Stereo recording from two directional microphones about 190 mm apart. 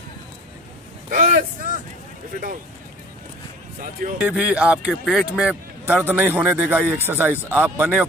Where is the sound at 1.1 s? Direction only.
45° right (ahead or behind).